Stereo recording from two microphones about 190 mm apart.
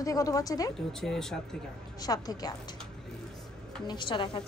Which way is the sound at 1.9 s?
20° left (ahead or behind).